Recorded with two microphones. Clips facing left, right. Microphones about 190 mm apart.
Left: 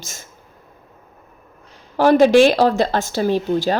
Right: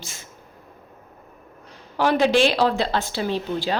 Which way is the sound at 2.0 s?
45° left (ahead or behind).